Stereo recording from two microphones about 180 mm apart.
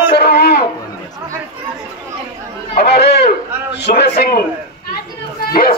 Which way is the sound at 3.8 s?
70° left (ahead or behind).